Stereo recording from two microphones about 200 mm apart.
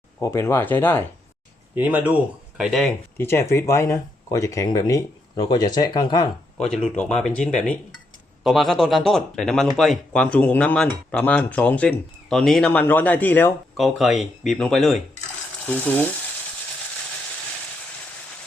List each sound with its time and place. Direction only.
0.2 s speech: 15° left (ahead or behind)
1.7 s speech: 10° right (ahead or behind)
3.5 s speech: 15° left (ahead or behind)
6.8 s speech: 5° left (ahead or behind)